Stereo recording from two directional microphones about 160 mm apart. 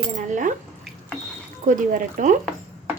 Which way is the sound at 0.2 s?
50° right (ahead or behind).